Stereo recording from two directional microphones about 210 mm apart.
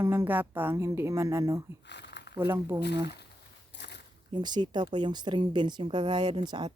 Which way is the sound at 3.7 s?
55° left (ahead or behind).